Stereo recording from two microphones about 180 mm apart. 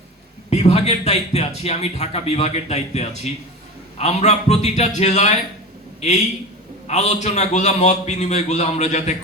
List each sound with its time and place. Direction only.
0.5 s a man's voice: 35° left (ahead or behind)
6.8 s a man's voice: 40° left (ahead or behind)